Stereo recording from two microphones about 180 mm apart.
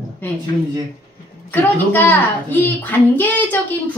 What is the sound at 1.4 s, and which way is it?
Speech, 10° left (ahead or behind).